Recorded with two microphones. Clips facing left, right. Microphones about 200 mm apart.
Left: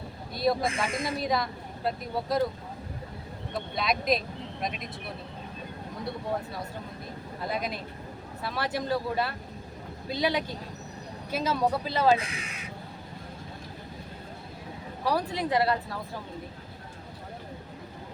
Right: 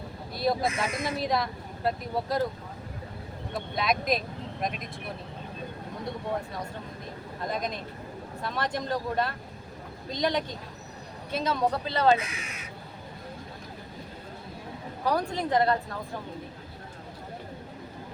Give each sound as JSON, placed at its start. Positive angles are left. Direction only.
{"t": 0.3, "sound": "a woman's voice", "side_deg": 0}
{"t": 0.7, "sound": "speech", "side_deg": 30}
{"t": 1.2, "sound": "a woman's voice", "side_deg": 0}
{"t": 3.8, "sound": "a woman's voice", "side_deg": 0}
{"t": 7.4, "sound": "speech", "side_deg": 5}
{"t": 12.1, "sound": "speech", "side_deg": 30}
{"t": 15.0, "sound": "a woman's voice", "side_deg": 5}